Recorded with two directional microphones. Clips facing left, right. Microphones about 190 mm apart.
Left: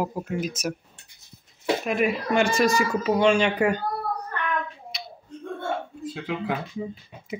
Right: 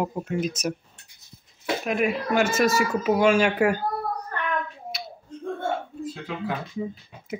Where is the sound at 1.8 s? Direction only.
Centre (ahead or behind).